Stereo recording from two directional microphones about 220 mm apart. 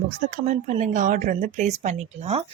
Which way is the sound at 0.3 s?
35° right (ahead or behind).